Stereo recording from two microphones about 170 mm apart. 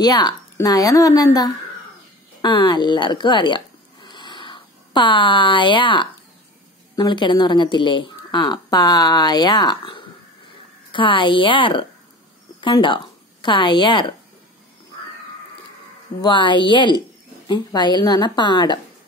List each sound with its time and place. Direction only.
0.0 s a woman's voice: 25° left (ahead or behind)
16.2 s a woman's voice: 30° left (ahead or behind)